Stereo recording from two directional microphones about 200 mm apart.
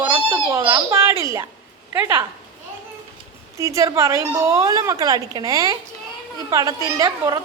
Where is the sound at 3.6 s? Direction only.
15° right (ahead or behind).